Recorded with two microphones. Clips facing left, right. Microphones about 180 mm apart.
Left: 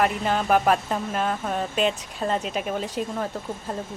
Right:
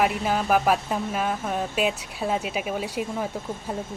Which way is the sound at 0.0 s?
5° right (ahead or behind).